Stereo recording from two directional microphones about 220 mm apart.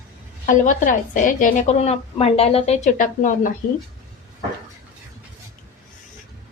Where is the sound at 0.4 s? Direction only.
35° left (ahead or behind).